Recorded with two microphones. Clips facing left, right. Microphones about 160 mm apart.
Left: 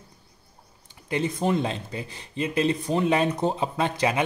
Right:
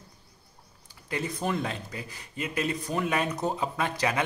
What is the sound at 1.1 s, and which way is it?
Speech, 20° left (ahead or behind).